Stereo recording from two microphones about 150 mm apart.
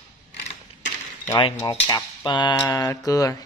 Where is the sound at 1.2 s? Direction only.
30° left (ahead or behind).